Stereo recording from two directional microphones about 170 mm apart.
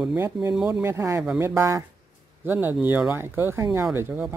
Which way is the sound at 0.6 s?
5° right (ahead or behind).